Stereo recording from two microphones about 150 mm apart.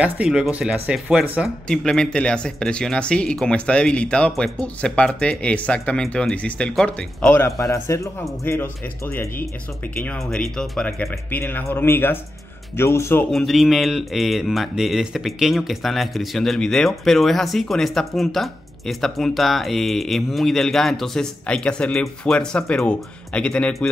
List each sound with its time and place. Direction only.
0.0 s speech: 5° right (ahead or behind)
1.7 s speech: 5° left (ahead or behind)
10.0 s speech: 5° left (ahead or behind)
13.3 s speech: centre (ahead or behind)